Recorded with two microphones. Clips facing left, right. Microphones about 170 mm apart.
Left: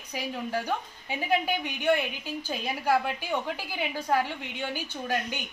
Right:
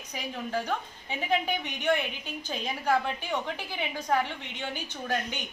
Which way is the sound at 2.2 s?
10° left (ahead or behind).